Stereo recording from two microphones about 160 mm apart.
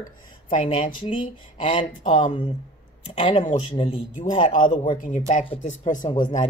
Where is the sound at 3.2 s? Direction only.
45° left (ahead or behind).